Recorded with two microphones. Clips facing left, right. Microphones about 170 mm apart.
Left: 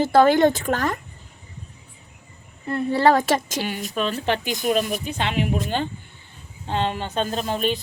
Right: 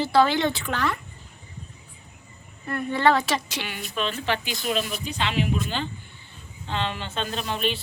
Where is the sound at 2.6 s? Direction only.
30° left (ahead or behind).